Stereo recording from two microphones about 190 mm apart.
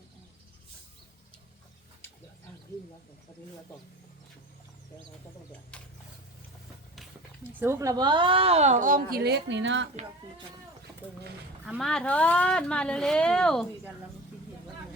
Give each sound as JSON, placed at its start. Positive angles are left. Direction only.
{"t": 5.7, "sound": "speech", "side_deg": 5}
{"t": 7.6, "sound": "a woman's voice", "side_deg": -15}
{"t": 11.7, "sound": "speech", "side_deg": 5}